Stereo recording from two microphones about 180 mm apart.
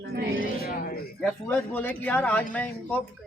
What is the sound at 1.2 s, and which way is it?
Speech, centre (ahead or behind).